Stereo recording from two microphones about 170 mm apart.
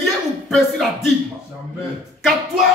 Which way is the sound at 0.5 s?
Centre (ahead or behind).